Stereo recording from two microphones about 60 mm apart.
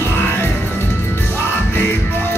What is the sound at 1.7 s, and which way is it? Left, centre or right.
Music, left.